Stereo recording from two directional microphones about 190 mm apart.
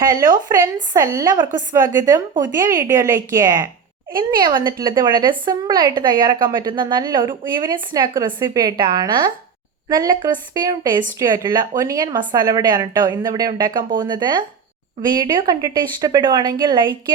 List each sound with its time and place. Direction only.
0.1 s a woman's voice: 20° right (ahead or behind)